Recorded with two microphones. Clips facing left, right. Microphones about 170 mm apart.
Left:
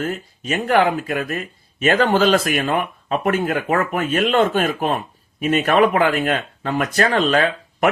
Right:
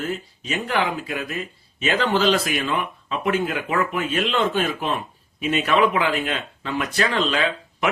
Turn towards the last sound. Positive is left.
turn(degrees=55)  # may be behind; listen again after turning